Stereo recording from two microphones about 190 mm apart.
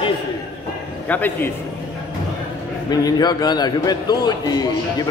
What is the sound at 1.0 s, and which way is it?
Speech, 10° left (ahead or behind).